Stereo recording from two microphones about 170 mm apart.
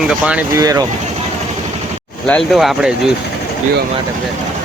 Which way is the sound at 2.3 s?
Centre (ahead or behind).